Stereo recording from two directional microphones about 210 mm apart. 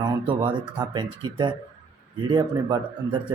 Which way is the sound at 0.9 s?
20° right (ahead or behind).